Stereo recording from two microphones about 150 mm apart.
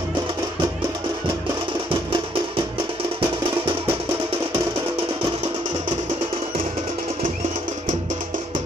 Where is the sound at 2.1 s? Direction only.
35° right (ahead or behind).